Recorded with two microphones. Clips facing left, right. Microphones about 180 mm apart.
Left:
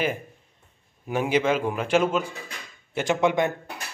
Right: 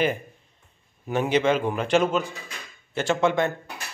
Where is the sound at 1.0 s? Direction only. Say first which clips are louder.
Right 1 dB; 10° left (ahead or behind).